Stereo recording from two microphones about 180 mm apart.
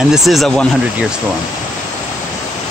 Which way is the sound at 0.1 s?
Centre (ahead or behind).